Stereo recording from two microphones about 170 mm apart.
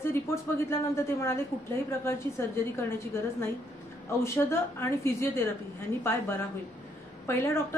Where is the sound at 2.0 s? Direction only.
15° left (ahead or behind).